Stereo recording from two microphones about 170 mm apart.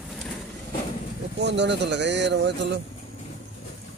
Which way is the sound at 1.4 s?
90° right.